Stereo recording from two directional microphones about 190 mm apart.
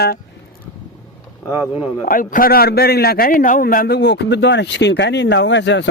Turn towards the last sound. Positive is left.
turn(degrees=70)  # may be behind; listen again after turning